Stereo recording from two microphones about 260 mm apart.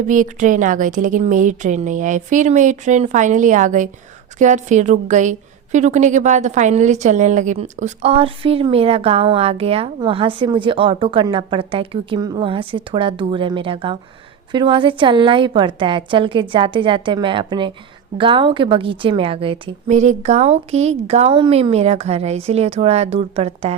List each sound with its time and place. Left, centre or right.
0.1 s a woman's voice: right